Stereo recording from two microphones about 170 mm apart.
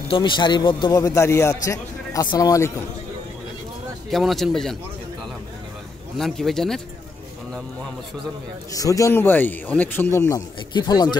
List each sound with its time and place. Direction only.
0.1 s a man's voice: 25° left (ahead or behind)
4.1 s a man's voice: centre (ahead or behind)
6.1 s a man's voice: centre (ahead or behind)
8.7 s speech: 20° left (ahead or behind)